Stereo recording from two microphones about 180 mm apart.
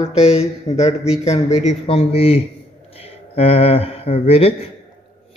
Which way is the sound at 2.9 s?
35° left (ahead or behind).